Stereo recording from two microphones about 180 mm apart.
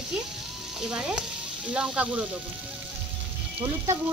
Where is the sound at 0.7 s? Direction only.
5° right (ahead or behind).